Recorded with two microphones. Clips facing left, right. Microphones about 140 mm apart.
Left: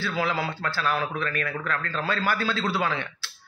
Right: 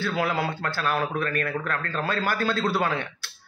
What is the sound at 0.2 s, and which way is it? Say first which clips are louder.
A man's voice: even; 50° right (ahead or behind).